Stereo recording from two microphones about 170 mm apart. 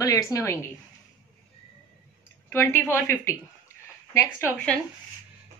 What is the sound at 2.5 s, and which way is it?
Speech, 15° left (ahead or behind).